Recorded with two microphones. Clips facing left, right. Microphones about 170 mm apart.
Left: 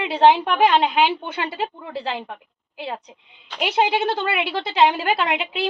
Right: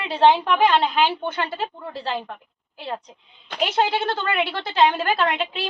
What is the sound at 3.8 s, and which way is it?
A woman's voice, 15° left (ahead or behind).